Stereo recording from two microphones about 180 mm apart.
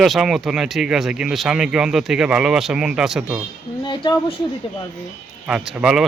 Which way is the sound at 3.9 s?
25° left (ahead or behind).